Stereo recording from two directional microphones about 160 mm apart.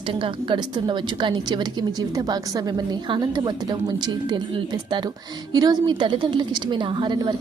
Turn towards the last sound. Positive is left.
turn(degrees=-30)  # may be behind; listen again after turning